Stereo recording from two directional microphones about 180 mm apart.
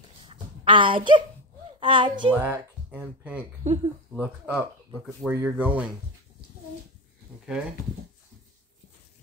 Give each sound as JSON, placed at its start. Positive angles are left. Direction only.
{"t": 0.2, "sound": "a sound", "side_deg": -30}
{"t": 1.8, "sound": "a woman's voice", "side_deg": -25}
{"t": 2.3, "sound": "speech", "side_deg": -10}
{"t": 3.6, "sound": "speech", "side_deg": -35}
{"t": 4.2, "sound": "speech", "side_deg": -10}